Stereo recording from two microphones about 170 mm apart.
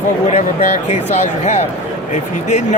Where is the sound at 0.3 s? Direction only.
40° left (ahead or behind).